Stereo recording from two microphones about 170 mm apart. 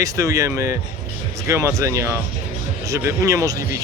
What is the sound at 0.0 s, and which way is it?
Speech, 20° right (ahead or behind).